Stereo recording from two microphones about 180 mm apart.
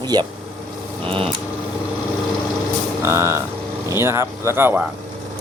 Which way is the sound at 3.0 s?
15° right (ahead or behind).